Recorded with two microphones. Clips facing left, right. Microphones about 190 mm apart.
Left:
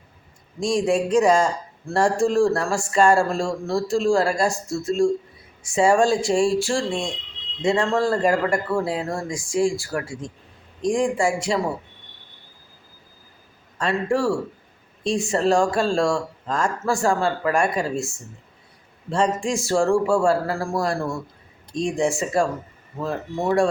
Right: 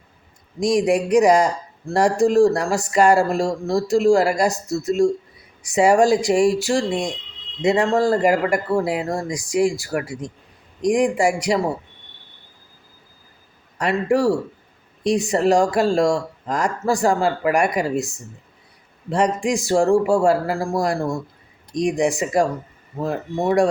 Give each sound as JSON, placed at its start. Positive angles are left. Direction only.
{"t": 0.6, "sound": "a man's voice", "side_deg": -15}
{"t": 13.7, "sound": "a man's voice", "side_deg": -20}